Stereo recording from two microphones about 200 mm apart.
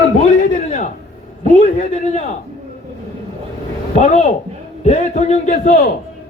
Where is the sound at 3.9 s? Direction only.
35° left (ahead or behind).